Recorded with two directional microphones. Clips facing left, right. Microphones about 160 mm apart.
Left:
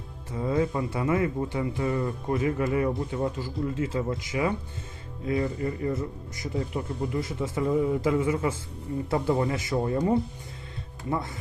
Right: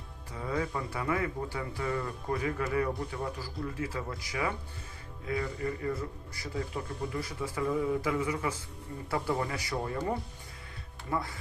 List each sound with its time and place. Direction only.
0.3 s speech: 25° left (ahead or behind)